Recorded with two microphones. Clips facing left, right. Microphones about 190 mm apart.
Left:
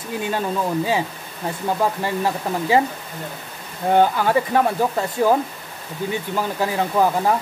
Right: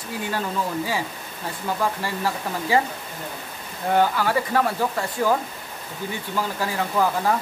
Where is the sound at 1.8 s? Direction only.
20° left (ahead or behind).